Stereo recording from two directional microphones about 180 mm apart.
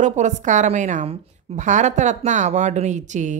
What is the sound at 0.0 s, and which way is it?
A woman's voice, 40° right (ahead or behind).